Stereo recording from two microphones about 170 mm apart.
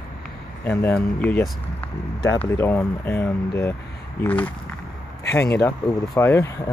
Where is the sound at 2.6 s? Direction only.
10° left (ahead or behind).